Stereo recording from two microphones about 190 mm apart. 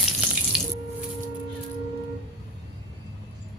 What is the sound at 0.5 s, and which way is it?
Music, 5° right (ahead or behind).